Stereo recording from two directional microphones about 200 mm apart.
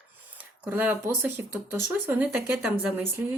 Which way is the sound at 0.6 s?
10° right (ahead or behind).